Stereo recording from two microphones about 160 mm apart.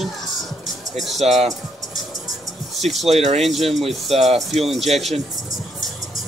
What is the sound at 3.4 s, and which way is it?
Speech, centre (ahead or behind).